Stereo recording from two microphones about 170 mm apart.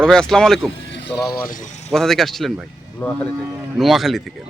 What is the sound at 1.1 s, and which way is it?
Speech, 20° left (ahead or behind).